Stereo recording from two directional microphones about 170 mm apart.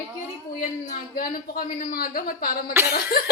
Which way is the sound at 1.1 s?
60° left (ahead or behind).